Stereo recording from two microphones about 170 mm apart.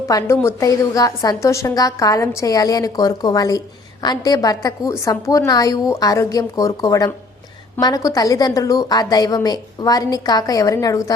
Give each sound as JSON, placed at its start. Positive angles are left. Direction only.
{"t": 0.1, "sound": "a woman's voice", "side_deg": 20}